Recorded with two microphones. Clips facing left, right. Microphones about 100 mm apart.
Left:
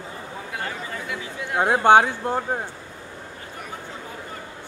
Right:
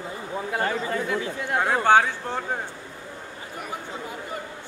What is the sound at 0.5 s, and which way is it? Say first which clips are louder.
Chatter: right 6 dB; 40° right (ahead or behind).